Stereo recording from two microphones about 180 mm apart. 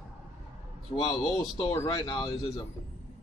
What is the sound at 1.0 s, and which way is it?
Speech, 20° left (ahead or behind).